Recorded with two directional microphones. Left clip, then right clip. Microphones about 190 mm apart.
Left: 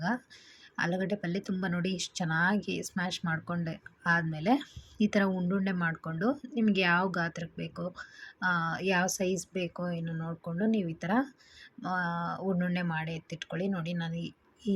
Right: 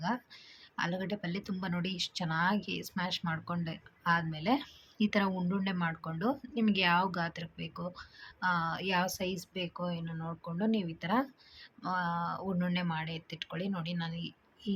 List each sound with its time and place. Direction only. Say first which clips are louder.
0.8 s speech: left 4 dB; 15° left (ahead or behind)